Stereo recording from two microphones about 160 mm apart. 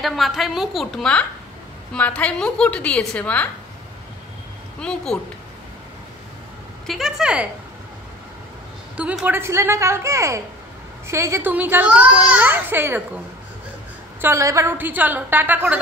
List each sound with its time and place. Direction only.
0.0 s a woman's voice: centre (ahead or behind)
4.7 s a woman's voice: 5° left (ahead or behind)
6.9 s a woman's voice: centre (ahead or behind)
8.9 s a child's voice: 5° right (ahead or behind)
14.2 s a child's voice: 20° right (ahead or behind)